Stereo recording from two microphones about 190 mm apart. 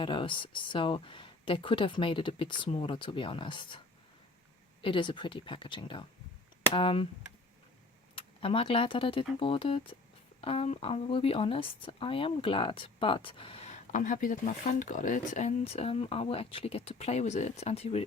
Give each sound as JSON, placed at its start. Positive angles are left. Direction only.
{"t": 0.0, "sound": "speech", "side_deg": 25}
{"t": 4.8, "sound": "speech", "side_deg": 25}
{"t": 8.1, "sound": "speech", "side_deg": 30}